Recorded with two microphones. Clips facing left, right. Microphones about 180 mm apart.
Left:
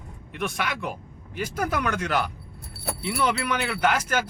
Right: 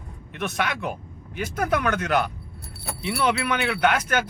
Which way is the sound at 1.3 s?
55° right (ahead or behind).